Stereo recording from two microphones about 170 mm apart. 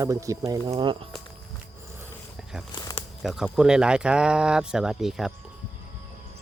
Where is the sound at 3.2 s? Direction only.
5° right (ahead or behind).